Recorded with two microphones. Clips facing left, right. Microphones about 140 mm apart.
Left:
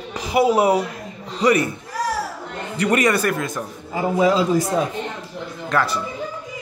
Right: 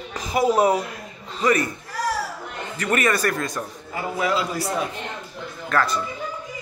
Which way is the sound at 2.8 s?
15° left (ahead or behind).